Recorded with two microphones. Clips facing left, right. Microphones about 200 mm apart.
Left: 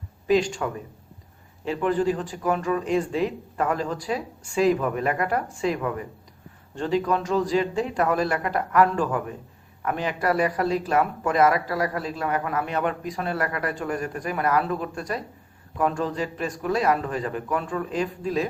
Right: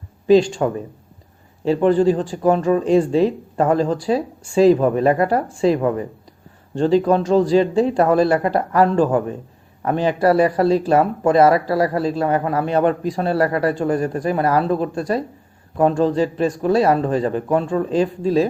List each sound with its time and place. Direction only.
0.3 s speech: 30° right (ahead or behind)